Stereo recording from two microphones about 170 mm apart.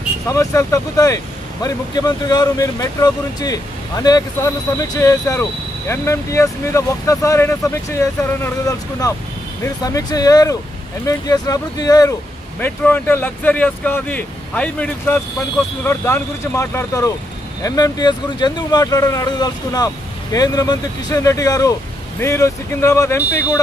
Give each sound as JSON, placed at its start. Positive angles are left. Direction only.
{"t": 0.3, "sound": "speech", "side_deg": 20}
{"t": 12.5, "sound": "speech", "side_deg": 10}